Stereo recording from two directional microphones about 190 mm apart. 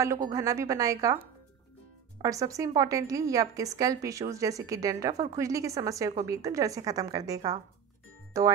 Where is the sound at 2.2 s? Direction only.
15° right (ahead or behind).